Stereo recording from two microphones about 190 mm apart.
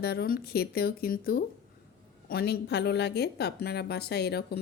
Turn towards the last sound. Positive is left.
turn(degrees=60)  # may be behind; listen again after turning